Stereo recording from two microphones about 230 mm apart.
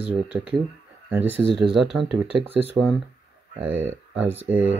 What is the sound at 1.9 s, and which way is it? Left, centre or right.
Speech, centre.